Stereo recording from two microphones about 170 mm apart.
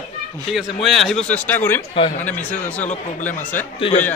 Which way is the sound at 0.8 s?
Centre (ahead or behind).